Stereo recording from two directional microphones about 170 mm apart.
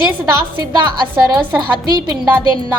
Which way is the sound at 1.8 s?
25° right (ahead or behind).